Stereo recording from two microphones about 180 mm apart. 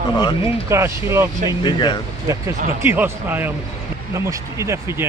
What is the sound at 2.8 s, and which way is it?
Speech, 10° right (ahead or behind).